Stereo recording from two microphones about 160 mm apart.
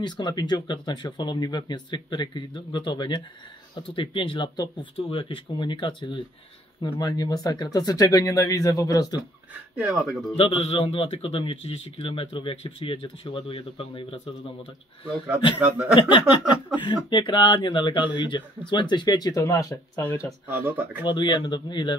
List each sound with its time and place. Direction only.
0.0 s a man's voice: 25° left (ahead or behind)
9.8 s speech: centre (ahead or behind)
10.3 s a man's voice: 35° left (ahead or behind)
16.0 s a man's voice: 30° left (ahead or behind); by 20.2 s 15° left (ahead or behind)
20.5 s speech: 15° right (ahead or behind)
21.1 s speech: 30° left (ahead or behind)